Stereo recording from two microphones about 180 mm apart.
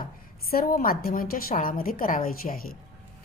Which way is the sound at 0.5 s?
50° left (ahead or behind).